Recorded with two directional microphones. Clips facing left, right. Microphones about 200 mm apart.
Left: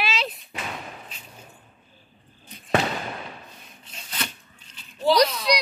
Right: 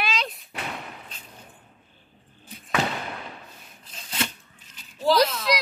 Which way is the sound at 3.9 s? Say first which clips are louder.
Right 3 dB; 25° right (ahead or behind).